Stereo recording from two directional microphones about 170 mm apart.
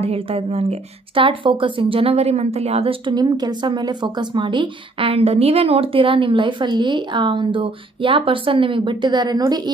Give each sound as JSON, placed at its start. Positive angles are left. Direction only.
{"t": 0.0, "sound": "a woman's voice", "side_deg": -35}